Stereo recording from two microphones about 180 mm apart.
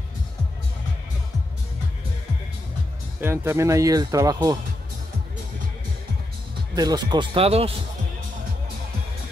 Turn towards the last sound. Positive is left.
turn(degrees=-35)  # may be behind; listen again after turning